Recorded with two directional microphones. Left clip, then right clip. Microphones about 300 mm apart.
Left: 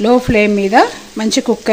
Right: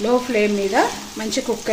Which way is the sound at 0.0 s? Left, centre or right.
Left.